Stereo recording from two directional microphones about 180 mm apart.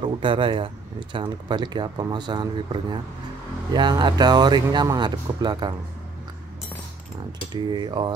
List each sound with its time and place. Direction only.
0.0 s speech: 30° right (ahead or behind)
7.7 s speech: 25° right (ahead or behind)